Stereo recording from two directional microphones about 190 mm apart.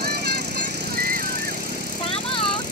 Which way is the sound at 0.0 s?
60° right (ahead or behind).